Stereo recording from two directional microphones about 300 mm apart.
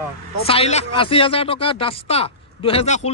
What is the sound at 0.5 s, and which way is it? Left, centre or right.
Speech, left.